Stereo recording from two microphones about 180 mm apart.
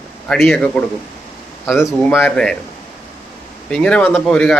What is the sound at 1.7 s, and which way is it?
Speech, 15° left (ahead or behind).